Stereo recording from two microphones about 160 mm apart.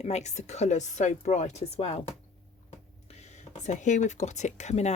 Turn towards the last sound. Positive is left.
turn(degrees=45)  # may be behind; listen again after turning